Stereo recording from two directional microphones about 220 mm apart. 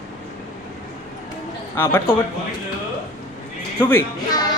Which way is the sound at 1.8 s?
10° left (ahead or behind).